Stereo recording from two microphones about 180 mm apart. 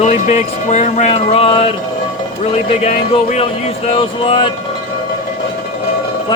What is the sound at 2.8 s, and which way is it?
Speech, 40° left (ahead or behind).